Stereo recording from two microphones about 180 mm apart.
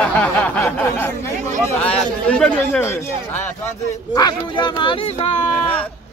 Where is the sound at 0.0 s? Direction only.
5° left (ahead or behind).